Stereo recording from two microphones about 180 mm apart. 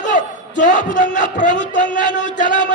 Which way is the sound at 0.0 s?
45° left (ahead or behind).